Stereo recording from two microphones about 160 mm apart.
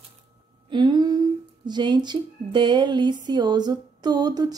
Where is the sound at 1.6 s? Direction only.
30° right (ahead or behind).